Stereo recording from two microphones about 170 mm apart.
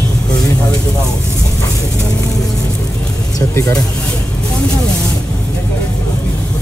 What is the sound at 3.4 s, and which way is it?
Music, 15° left (ahead or behind).